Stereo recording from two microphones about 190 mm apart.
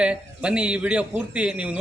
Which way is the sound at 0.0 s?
5° right (ahead or behind).